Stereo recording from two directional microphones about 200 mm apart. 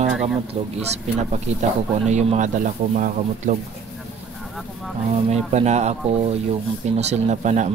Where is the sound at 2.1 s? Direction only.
35° right (ahead or behind).